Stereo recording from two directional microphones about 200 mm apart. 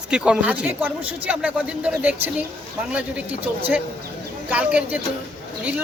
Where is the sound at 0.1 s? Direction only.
5° right (ahead or behind).